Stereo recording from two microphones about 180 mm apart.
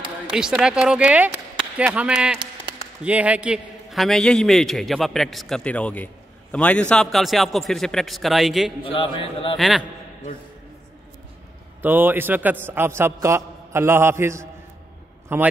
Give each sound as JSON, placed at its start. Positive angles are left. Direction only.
{"t": 0.3, "sound": "a man's voice", "side_deg": -5}
{"t": 8.9, "sound": "a man's voice", "side_deg": 30}
{"t": 9.6, "sound": "a man's voice", "side_deg": 0}
{"t": 11.8, "sound": "a man's voice", "side_deg": -10}